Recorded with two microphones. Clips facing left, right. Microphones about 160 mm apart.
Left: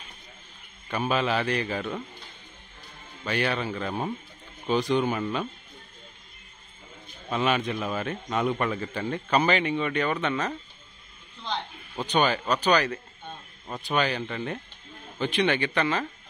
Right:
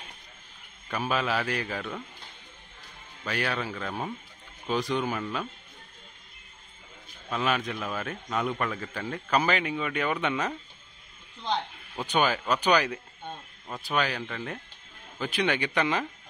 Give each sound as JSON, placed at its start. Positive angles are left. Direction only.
{"t": 0.8, "sound": "a man's voice", "side_deg": 0}
{"t": 3.3, "sound": "a man's voice", "side_deg": 0}
{"t": 7.2, "sound": "a man's voice", "side_deg": 0}
{"t": 12.0, "sound": "speech", "side_deg": -5}
{"t": 13.7, "sound": "a man's voice", "side_deg": 20}
{"t": 13.9, "sound": "a man's voice", "side_deg": 0}